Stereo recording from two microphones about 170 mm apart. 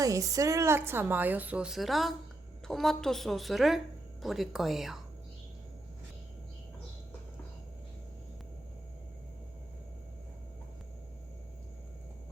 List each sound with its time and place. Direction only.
0.0 s a woman's voice: 20° right (ahead or behind); by 4.9 s centre (ahead or behind)